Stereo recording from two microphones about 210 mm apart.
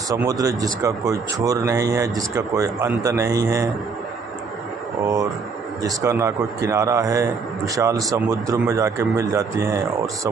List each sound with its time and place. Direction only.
0.1 s speech: 15° right (ahead or behind)
5.0 s speech: 15° right (ahead or behind)